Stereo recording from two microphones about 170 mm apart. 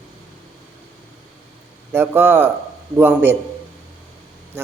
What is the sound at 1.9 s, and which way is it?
Speech, 15° right (ahead or behind).